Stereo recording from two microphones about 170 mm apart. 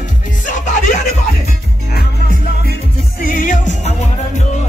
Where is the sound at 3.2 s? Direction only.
50° left (ahead or behind).